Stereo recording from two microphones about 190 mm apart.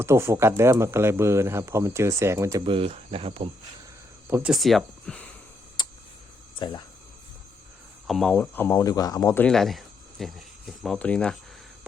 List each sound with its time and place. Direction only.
0.0 s speech: 15° right (ahead or behind)
2.6 s speech: 30° right (ahead or behind)
4.3 s speech: 10° right (ahead or behind)
4.5 s speech: centre (ahead or behind)
5.8 s tick: 25° left (ahead or behind)
6.6 s speech: 25° left (ahead or behind)
8.0 s speech: centre (ahead or behind)